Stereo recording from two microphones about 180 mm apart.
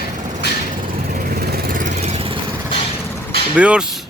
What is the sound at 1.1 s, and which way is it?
Vehicle, 60° right (ahead or behind).